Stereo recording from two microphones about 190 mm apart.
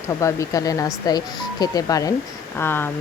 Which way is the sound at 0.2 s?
15° left (ahead or behind).